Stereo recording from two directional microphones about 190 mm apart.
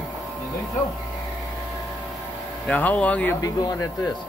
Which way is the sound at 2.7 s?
10° left (ahead or behind).